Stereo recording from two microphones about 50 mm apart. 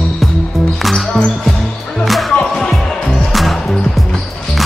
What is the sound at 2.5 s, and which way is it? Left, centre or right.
Music, centre.